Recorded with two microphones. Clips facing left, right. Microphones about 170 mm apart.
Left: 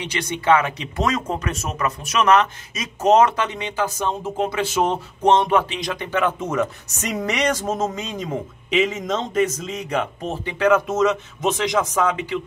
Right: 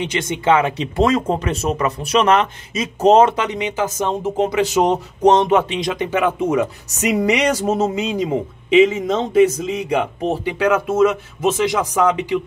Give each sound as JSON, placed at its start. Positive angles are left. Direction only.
{"t": 0.0, "sound": "speech", "side_deg": -20}
{"t": 3.3, "sound": "speech", "side_deg": -15}